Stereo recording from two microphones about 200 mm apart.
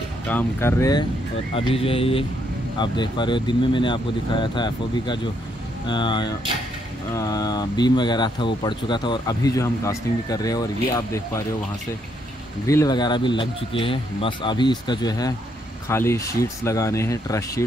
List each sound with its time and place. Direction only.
0.3 s speech: 10° left (ahead or behind)
1.5 s speech: 30° left (ahead or behind)
12.6 s speech: 20° left (ahead or behind)